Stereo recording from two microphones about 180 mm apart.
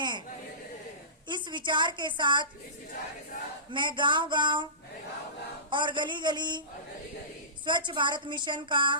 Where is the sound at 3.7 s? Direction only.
25° right (ahead or behind).